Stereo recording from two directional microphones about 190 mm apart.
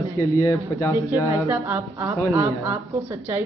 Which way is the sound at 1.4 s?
15° right (ahead or behind).